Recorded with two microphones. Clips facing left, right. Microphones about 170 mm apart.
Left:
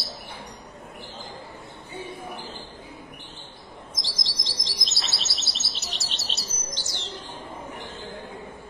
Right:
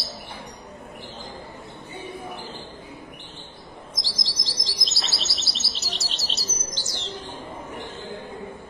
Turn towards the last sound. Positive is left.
turn(degrees=0)  # may be behind; listen again after turning